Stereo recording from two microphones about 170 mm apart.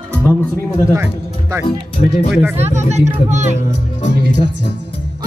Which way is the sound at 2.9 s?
45° right (ahead or behind).